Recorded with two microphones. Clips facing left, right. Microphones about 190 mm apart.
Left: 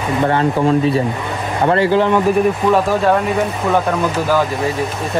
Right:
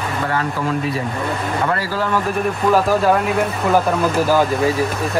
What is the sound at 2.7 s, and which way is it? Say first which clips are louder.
Speech: left 1 dB; centre (ahead or behind).